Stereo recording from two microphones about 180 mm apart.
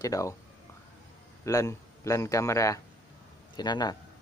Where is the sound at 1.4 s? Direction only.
15° left (ahead or behind).